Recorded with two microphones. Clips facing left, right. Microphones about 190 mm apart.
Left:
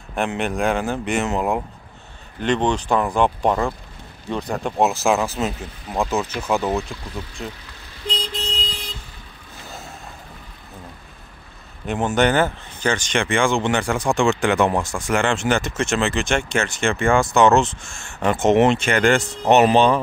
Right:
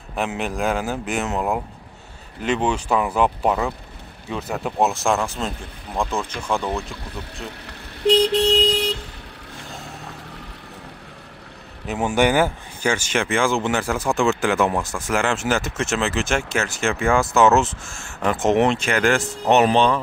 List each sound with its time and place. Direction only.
0.1 s speech: centre (ahead or behind)
7.6 s vehicle: 70° right (ahead or behind)
11.9 s speech: 10° right (ahead or behind)